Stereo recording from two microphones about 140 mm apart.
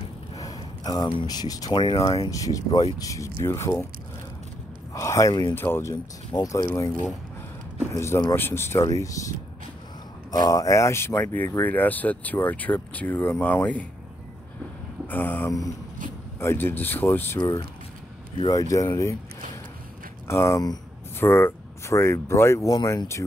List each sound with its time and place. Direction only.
0.3 s speech: 25° left (ahead or behind)
4.9 s speech: 20° left (ahead or behind)
6.3 s speech: 30° left (ahead or behind)
7.9 s speech: 20° left (ahead or behind)
10.3 s speech: 25° left (ahead or behind)
15.0 s speech: 15° left (ahead or behind)
17.4 s speech: 25° left (ahead or behind)
18.7 s speech: 25° left (ahead or behind)
20.2 s speech: 20° left (ahead or behind)